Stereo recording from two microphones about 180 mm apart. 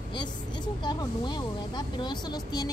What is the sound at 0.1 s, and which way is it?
Speech, 25° left (ahead or behind).